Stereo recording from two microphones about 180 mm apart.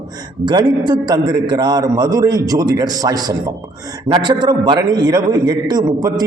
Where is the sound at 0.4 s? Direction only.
25° right (ahead or behind).